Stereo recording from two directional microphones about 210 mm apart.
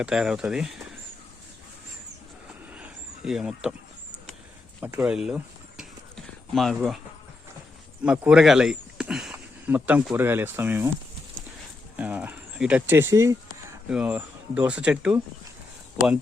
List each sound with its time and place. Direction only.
0.0 s speech: 5° right (ahead or behind)
2.7 s a sound: 5° right (ahead or behind)
4.9 s speech: 5° right (ahead or behind)
8.0 s speech: 5° right (ahead or behind)
11.9 s a sound: 5° right (ahead or behind)
13.9 s speech: 5° right (ahead or behind)